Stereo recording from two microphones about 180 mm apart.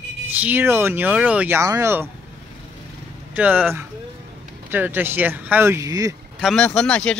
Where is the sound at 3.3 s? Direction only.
10° right (ahead or behind).